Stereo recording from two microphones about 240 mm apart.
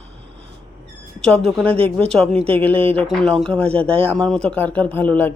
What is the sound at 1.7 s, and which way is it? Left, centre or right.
Speech, right.